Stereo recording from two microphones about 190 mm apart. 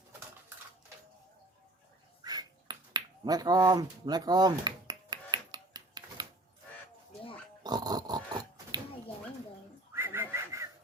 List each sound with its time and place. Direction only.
2.2 s finger snapping: 20° right (ahead or behind)
7.6 s pig: 20° right (ahead or behind)
9.9 s whistling: 15° right (ahead or behind)